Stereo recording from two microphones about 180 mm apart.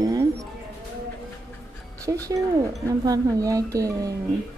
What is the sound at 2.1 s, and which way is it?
Speech, 20° right (ahead or behind).